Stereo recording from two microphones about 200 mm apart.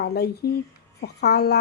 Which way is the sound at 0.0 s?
55° left (ahead or behind).